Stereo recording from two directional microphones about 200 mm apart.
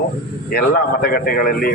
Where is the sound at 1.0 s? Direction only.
45° left (ahead or behind).